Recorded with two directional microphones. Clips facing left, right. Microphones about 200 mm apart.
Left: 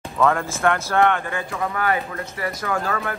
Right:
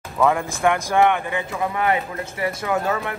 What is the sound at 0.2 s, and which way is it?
Speech, 15° right (ahead or behind).